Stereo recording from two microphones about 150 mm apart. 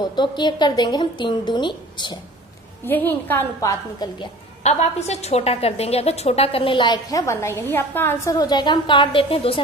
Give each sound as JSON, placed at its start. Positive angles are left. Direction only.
{"t": 0.0, "sound": "a woman's voice", "side_deg": 30}
{"t": 2.8, "sound": "a woman's voice", "side_deg": 15}
{"t": 4.0, "sound": "a woman's voice", "side_deg": 25}
{"t": 4.6, "sound": "a woman's voice", "side_deg": 45}